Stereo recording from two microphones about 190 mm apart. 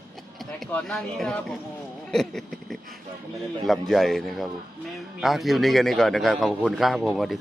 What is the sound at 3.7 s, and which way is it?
A man's voice, centre (ahead or behind).